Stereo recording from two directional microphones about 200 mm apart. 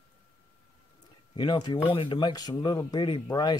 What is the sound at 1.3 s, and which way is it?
Speech, 20° left (ahead or behind).